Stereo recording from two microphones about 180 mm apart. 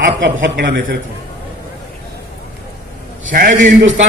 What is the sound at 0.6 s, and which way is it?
Speech, 60° right (ahead or behind).